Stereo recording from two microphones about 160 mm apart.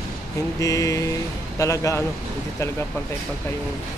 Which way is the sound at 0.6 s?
20° left (ahead or behind).